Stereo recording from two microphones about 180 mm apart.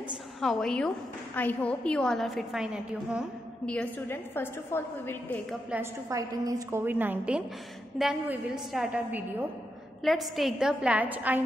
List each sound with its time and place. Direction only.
0.4 s a woman's voice: 5° left (ahead or behind)
3.6 s a woman's voice: 5° left (ahead or behind)
5.8 s a woman's voice: 15° right (ahead or behind)